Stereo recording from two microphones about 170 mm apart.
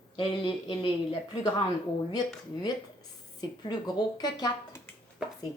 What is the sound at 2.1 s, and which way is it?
Speech, 25° left (ahead or behind).